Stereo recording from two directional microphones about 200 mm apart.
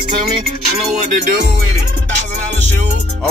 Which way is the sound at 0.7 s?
35° right (ahead or behind).